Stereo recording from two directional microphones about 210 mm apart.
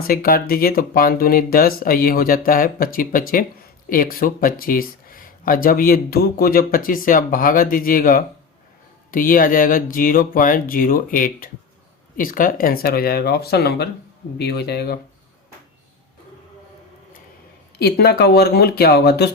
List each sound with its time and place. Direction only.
0.0 s speech: 45° left (ahead or behind)
17.7 s speech: 50° left (ahead or behind)